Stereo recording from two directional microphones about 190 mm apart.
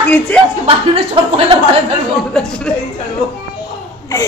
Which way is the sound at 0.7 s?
30° right (ahead or behind).